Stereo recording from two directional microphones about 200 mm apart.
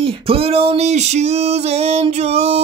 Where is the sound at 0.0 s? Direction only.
30° right (ahead or behind).